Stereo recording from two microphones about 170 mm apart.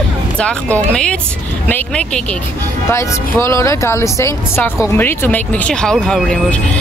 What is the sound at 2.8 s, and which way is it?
Speech, 15° left (ahead or behind).